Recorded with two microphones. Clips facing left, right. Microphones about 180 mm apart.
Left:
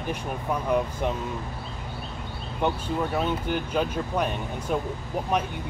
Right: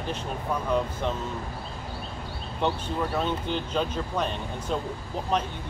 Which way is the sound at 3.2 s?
10° left (ahead or behind).